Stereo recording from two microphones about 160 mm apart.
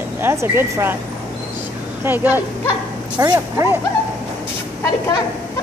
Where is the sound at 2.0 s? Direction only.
10° right (ahead or behind).